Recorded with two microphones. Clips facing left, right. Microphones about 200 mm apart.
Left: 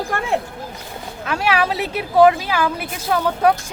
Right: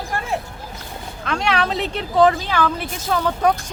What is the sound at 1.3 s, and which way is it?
A woman's voice, 5° left (ahead or behind).